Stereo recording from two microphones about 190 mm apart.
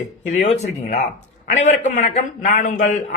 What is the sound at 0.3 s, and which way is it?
A man's voice, 35° left (ahead or behind).